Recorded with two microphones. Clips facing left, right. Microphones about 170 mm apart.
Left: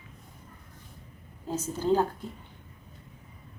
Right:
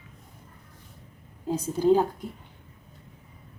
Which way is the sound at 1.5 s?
10° right (ahead or behind).